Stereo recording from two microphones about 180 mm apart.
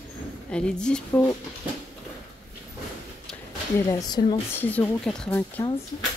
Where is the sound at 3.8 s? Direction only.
20° left (ahead or behind).